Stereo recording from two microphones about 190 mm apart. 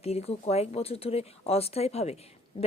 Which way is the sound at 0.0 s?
35° left (ahead or behind).